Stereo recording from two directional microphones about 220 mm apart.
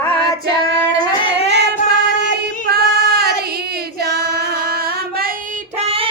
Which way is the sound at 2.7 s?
45° right (ahead or behind).